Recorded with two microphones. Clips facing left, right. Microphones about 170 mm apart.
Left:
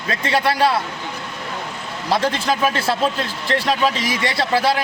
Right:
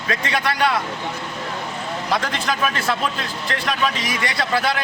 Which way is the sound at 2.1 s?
30° left (ahead or behind).